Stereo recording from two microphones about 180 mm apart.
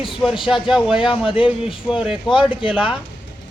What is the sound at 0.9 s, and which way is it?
Speech, 30° left (ahead or behind).